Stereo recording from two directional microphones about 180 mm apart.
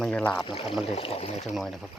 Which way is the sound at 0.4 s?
30° left (ahead or behind).